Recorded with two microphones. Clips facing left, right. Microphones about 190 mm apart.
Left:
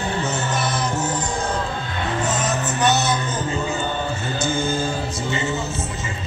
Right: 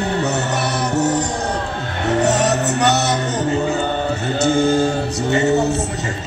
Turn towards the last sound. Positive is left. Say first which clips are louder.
# right 9 dB
turn(degrees=-70)  # may be behind; listen again after turning